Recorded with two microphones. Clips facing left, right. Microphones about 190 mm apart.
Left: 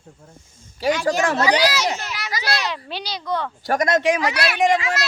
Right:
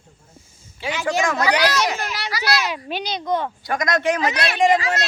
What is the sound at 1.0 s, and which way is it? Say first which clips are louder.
Speech: right 3 dB; 30° left (ahead or behind).